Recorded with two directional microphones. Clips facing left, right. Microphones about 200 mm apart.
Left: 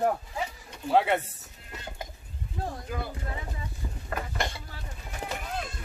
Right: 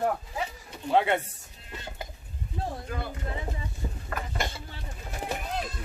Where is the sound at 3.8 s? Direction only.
25° right (ahead or behind).